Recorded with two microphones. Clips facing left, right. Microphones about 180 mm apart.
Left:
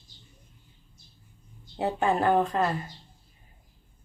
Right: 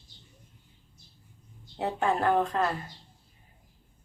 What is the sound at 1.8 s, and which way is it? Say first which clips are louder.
Speech: left 2 dB; 5° left (ahead or behind).